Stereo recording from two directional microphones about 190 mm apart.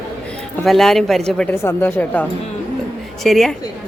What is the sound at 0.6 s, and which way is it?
A man's voice, centre (ahead or behind).